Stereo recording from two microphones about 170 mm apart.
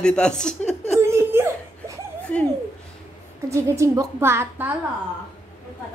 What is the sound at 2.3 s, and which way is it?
Speech, 10° left (ahead or behind).